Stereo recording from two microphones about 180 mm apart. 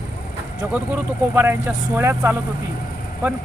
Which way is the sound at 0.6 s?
10° right (ahead or behind).